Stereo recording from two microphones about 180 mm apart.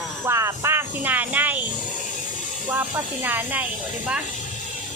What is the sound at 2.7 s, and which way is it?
Speech, 10° right (ahead or behind).